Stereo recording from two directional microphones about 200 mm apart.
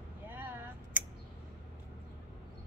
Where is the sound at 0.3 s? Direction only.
10° right (ahead or behind).